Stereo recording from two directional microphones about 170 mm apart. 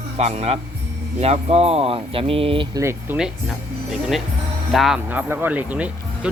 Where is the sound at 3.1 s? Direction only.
5° right (ahead or behind).